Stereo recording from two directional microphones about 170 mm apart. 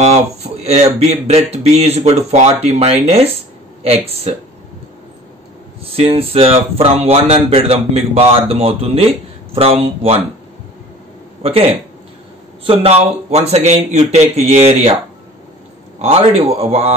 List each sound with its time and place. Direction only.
0.0 s speech: 40° right (ahead or behind)
5.9 s speech: 35° right (ahead or behind)
11.4 s speech: 35° right (ahead or behind)
16.0 s speech: 35° right (ahead or behind)